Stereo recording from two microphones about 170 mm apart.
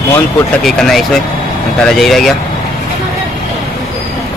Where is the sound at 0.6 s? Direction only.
Centre (ahead or behind).